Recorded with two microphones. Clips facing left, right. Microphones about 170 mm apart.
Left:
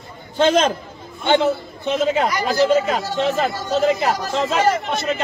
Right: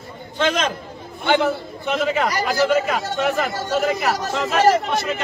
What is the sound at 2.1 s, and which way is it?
A man's voice, 25° left (ahead or behind).